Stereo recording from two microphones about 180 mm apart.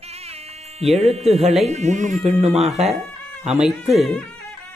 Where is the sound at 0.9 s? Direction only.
35° right (ahead or behind).